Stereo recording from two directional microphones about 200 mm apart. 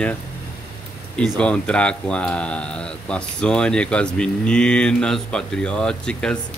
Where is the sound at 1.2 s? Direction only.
5° left (ahead or behind).